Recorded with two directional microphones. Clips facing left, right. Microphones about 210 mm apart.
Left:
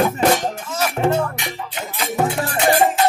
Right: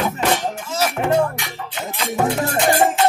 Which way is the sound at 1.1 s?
25° left (ahead or behind).